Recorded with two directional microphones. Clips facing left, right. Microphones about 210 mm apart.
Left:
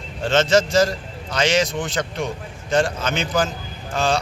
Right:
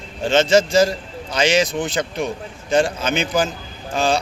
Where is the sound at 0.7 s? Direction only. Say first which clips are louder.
Right 2 dB; 30° right (ahead or behind).